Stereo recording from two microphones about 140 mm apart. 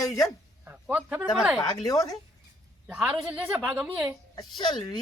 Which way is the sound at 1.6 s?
30° left (ahead or behind).